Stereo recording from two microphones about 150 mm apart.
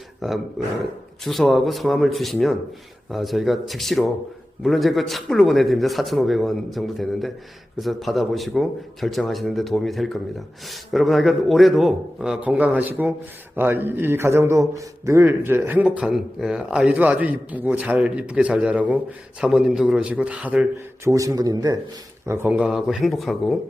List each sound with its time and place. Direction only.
0.2 s a man's voice: centre (ahead or behind)
21.1 s speech: 20° right (ahead or behind)
22.3 s a man's voice: 15° right (ahead or behind)